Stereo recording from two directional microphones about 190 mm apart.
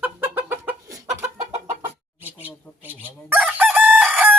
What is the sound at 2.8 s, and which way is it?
Chicken, 10° right (ahead or behind).